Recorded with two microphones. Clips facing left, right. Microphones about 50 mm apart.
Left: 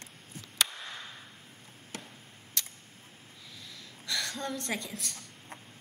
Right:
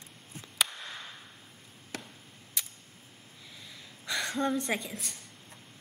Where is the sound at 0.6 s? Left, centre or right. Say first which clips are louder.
Even; centre.